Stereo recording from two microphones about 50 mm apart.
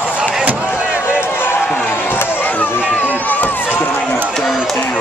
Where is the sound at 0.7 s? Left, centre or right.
Right.